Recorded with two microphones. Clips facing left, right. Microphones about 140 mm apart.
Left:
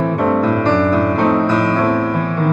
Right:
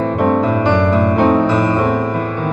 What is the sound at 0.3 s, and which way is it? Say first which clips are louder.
Music: even; 20° right (ahead or behind).